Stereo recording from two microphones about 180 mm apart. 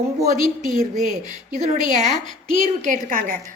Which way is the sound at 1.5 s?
45° right (ahead or behind).